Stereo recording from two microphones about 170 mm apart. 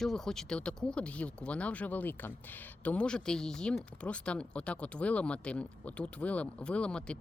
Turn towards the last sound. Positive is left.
turn(degrees=5)  # may be behind; listen again after turning